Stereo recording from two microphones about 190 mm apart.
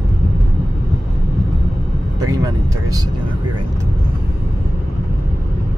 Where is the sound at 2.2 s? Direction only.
20° right (ahead or behind).